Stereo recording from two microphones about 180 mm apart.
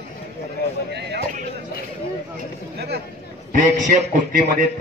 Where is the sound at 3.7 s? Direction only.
45° right (ahead or behind).